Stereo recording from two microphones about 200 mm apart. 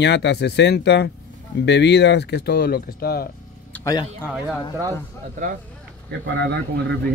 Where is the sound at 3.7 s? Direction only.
15° left (ahead or behind).